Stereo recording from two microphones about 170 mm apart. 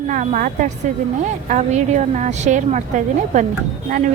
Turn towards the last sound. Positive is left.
turn(degrees=-45)  # may be behind; listen again after turning